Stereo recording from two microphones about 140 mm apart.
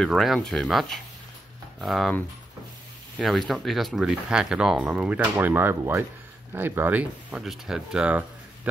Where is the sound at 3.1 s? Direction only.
Centre (ahead or behind).